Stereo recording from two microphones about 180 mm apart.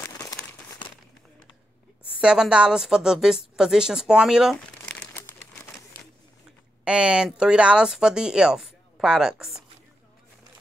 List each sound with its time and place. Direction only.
0.0 s crumpling: 15° left (ahead or behind)
2.1 s speech: 5° right (ahead or behind)
6.8 s speech: 5° right (ahead or behind)